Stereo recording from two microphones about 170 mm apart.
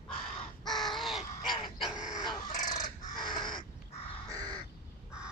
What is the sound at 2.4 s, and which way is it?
Chicken, 45° left (ahead or behind).